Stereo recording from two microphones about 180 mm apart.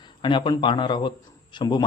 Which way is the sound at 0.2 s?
25° left (ahead or behind).